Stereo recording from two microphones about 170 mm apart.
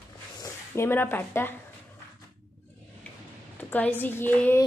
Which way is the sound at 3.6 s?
10° left (ahead or behind).